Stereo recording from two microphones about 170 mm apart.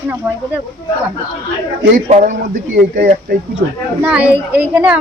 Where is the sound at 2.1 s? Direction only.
45° right (ahead or behind).